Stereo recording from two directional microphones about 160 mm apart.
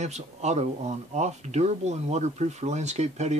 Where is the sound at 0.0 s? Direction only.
45° right (ahead or behind).